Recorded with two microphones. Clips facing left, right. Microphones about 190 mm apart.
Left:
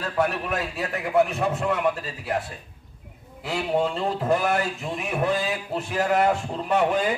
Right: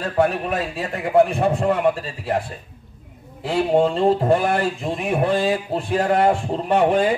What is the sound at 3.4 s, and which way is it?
A man's voice, 30° right (ahead or behind).